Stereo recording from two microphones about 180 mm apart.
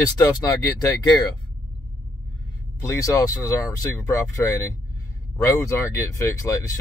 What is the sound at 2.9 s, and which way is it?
Speech, 15° left (ahead or behind).